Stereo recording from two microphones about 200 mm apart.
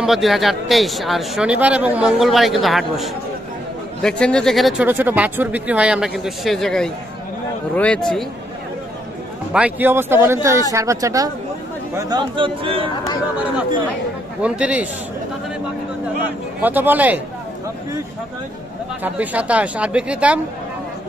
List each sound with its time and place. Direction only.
0.0 s speech: centre (ahead or behind)
9.5 s a man's voice: 5° right (ahead or behind); by 12.9 s 25° right (ahead or behind)
14.4 s speech: 5° right (ahead or behind)
16.6 s speech: 10° right (ahead or behind)
19.0 s speech: 5° right (ahead or behind)